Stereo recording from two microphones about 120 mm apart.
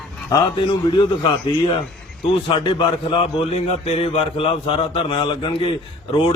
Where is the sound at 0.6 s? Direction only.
45° left (ahead or behind).